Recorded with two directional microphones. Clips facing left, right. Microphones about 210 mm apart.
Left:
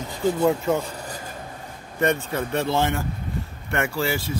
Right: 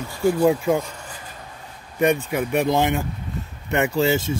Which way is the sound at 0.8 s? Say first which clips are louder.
Left 4 dB; 35° left (ahead or behind).